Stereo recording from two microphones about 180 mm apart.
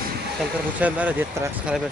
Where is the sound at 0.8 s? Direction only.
10° right (ahead or behind).